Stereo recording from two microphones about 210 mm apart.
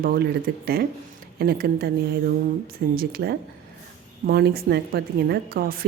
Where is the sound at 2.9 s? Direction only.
45° right (ahead or behind).